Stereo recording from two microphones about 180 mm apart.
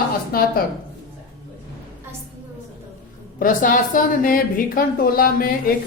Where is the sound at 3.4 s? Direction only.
50° left (ahead or behind).